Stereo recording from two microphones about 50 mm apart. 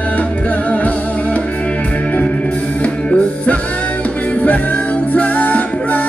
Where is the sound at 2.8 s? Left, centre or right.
Left.